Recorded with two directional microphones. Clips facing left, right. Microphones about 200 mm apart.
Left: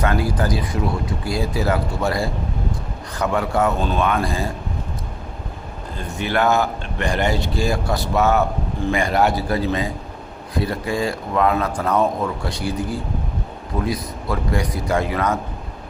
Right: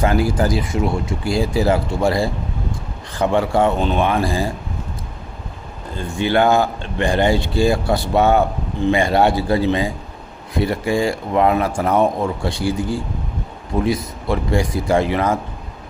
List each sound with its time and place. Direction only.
0.0 s speech: 25° right (ahead or behind)
6.0 s speech: 30° right (ahead or behind)